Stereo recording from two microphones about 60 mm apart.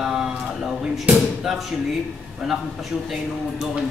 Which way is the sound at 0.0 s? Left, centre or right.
Centre.